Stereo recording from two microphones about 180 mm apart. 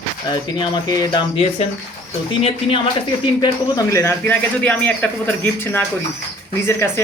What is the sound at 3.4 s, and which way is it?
Speech, 20° left (ahead or behind).